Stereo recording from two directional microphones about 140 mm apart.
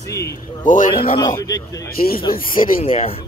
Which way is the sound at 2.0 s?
90° left.